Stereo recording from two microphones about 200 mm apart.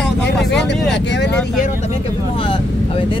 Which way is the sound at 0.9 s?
60° left (ahead or behind).